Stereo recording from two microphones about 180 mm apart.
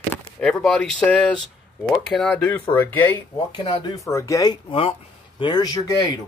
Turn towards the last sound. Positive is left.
turn(degrees=20)  # may be behind; listen again after turning